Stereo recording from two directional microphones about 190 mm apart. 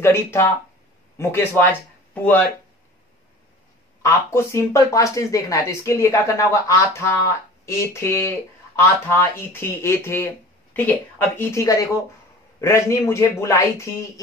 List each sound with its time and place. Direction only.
0.0 s speech: 15° left (ahead or behind)
4.0 s speech: 15° left (ahead or behind)